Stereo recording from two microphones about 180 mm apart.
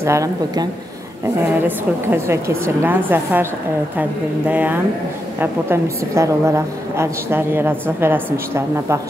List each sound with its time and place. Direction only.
0.0 s a woman's voice: 15° right (ahead or behind)